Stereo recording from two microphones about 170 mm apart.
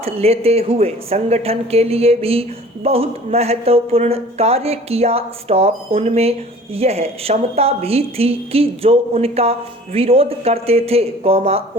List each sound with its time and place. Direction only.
0.0 s speech: 35° right (ahead or behind)